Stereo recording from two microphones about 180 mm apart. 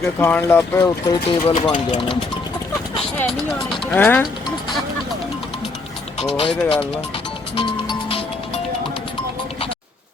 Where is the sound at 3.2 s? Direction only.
Centre (ahead or behind).